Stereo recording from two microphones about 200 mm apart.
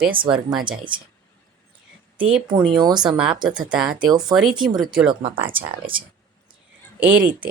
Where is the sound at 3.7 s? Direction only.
5° right (ahead or behind).